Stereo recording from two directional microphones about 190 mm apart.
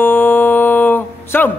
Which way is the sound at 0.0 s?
10° left (ahead or behind).